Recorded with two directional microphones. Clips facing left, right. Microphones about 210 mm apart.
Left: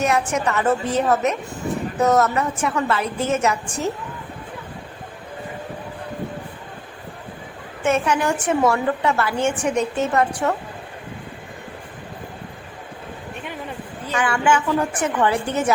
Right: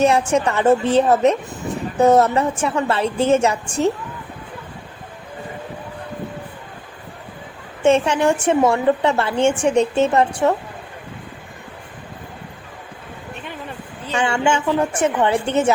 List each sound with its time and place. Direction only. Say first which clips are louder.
0.0 s a woman's voice: right 4 dB; 30° right (ahead or behind)
7.8 s a woman's voice: right 4 dB; 30° right (ahead or behind)
14.1 s a woman's voice: right 1 dB; 25° right (ahead or behind)